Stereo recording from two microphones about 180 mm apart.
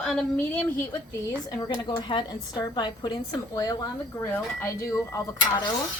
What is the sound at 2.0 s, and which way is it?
A woman's voice, 25° left (ahead or behind).